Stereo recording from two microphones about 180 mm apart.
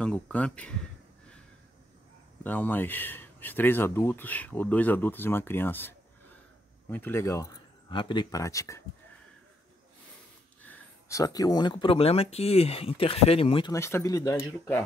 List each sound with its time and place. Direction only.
0.0 s speech: 5° left (ahead or behind)
2.4 s speech: 10° left (ahead or behind)
7.9 s speech: 25° left (ahead or behind)
10.6 s speech: 15° left (ahead or behind); by 13.7 s 30° left (ahead or behind)
13.7 s speech: 15° left (ahead or behind)